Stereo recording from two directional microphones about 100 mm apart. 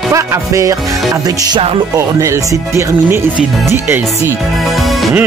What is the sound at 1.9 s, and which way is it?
Speech, 30° right (ahead or behind).